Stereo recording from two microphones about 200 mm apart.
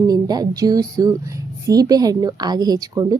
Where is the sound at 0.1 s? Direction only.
20° right (ahead or behind).